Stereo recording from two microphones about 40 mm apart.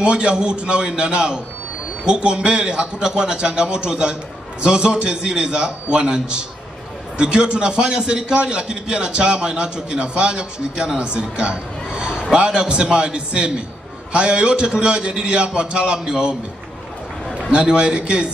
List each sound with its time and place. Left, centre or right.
0.0 s a man's voice: right
17.5 s a man's voice: right